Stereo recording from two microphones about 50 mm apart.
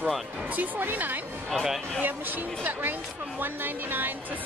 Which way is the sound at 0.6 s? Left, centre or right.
Right.